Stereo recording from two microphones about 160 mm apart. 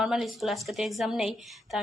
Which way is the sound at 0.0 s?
Centre (ahead or behind).